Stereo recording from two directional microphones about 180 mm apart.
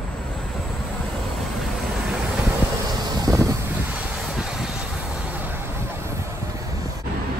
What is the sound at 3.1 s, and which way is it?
Wind noise, 20° right (ahead or behind).